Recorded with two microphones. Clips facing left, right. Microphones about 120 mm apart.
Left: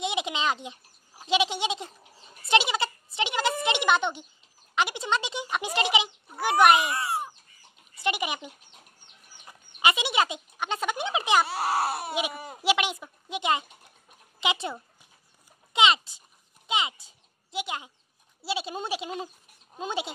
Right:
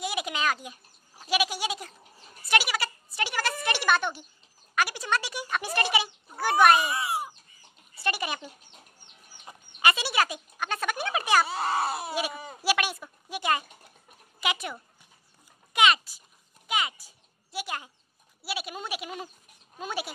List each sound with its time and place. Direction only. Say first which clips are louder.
0.0 s a sound: left 1 dB; 20° left (ahead or behind)
1.2 s goat: left 2 dB; 25° left (ahead or behind)
4.7 s speech: left 1 dB; 20° left (ahead or behind)
8.0 s speech: left 2 dB; 15° left (ahead or behind)
9.8 s speech: left 1 dB; 20° left (ahead or behind)
11.4 s speech: left 1 dB; 5° left (ahead or behind)
12.1 s speech: left 1 dB; 20° left (ahead or behind)
15.7 s a sound: even; 25° left (ahead or behind)
18.4 s speech: left 4 dB; 25° left (ahead or behind)